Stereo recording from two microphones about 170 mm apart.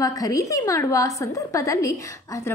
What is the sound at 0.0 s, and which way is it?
A woman's voice, 20° left (ahead or behind).